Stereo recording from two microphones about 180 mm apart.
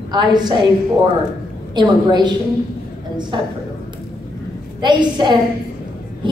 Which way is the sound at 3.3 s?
25° right (ahead or behind).